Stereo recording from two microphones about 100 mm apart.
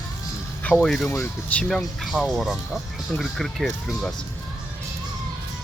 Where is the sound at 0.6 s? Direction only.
15° left (ahead or behind).